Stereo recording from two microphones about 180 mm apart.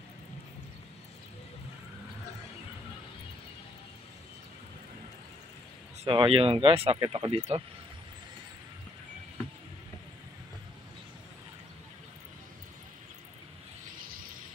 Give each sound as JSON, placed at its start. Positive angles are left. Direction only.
{"t": 6.0, "sound": "speech", "side_deg": -30}